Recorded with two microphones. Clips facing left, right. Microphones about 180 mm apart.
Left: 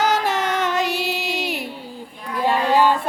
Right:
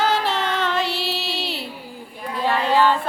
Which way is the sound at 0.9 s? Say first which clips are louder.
Left 3 dB; 45° left (ahead or behind).